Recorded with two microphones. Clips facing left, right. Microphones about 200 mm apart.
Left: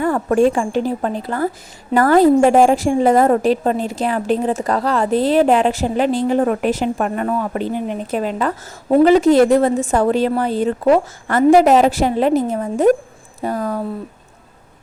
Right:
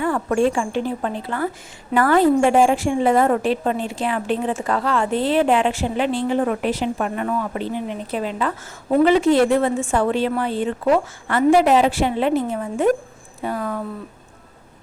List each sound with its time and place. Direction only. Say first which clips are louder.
0.0 s a woman's voice: left 4 dB; 45° left (ahead or behind)